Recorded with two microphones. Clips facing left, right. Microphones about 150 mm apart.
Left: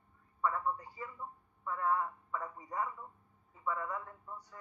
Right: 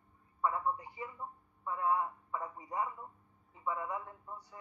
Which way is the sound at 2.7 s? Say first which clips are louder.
Right 1 dB; 20° right (ahead or behind).